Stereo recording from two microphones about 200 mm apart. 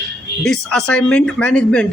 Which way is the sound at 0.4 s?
5° left (ahead or behind).